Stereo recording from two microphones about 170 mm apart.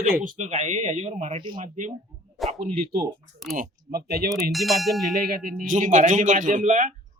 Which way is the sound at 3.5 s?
55° right (ahead or behind).